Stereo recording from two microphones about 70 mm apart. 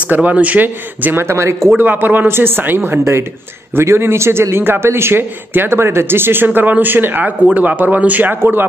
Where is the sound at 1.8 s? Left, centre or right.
Right.